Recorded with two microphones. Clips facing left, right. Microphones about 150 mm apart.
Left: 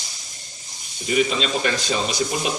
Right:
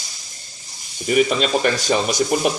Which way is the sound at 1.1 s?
50° right (ahead or behind).